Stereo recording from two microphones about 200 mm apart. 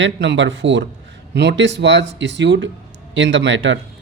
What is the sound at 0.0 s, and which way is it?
Speech, 65° right (ahead or behind).